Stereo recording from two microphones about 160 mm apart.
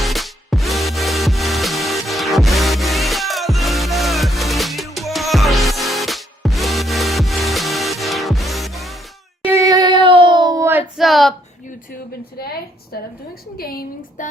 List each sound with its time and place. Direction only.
0.0 s music: centre (ahead or behind)
9.5 s child singing: 20° right (ahead or behind)
10.9 s a sound: centre (ahead or behind)
12.4 s a woman's voice: 75° left (ahead or behind)